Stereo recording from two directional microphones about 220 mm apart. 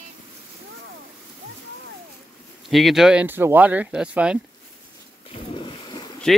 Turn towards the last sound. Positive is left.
turn(degrees=20)  # may be behind; listen again after turning